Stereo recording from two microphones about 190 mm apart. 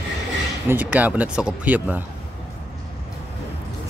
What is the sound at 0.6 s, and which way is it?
Speech, 10° right (ahead or behind).